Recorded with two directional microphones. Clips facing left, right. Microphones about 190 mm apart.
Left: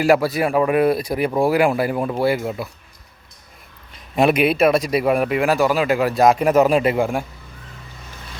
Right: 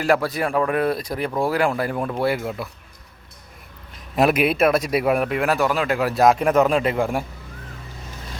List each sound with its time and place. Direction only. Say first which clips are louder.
0.0 s speech: left 4 dB; 10° left (ahead or behind)
4.1 s a man's voice: left 2 dB; centre (ahead or behind)